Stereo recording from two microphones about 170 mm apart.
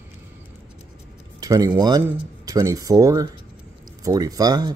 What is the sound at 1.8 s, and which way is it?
Speech, 20° right (ahead or behind).